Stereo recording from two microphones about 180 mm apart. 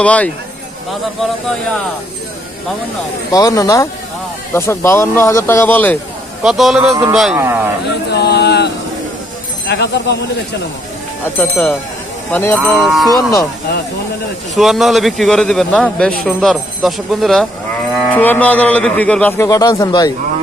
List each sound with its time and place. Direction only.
0.0 s a man's voice: 5° left (ahead or behind)
3.3 s a man's voice: 20° left (ahead or behind)
6.4 s a man's voice: centre (ahead or behind)
8.1 s a sound: 65° left (ahead or behind)
9.7 s speech: 70° left (ahead or behind)
11.3 s a man's voice: 10° left (ahead or behind)
13.1 s speech: 20° left (ahead or behind)
14.5 s a man's voice: centre (ahead or behind); by 20.1 s 20° left (ahead or behind)